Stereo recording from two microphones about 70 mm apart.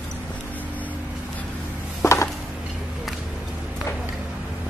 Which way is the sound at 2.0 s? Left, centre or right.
Left.